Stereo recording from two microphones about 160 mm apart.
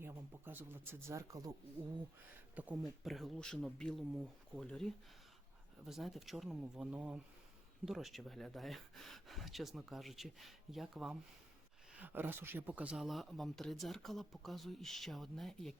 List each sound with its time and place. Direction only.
0.0 s speech: 15° right (ahead or behind)
2.6 s speech: 5° right (ahead or behind)
11.9 s speech: 10° right (ahead or behind)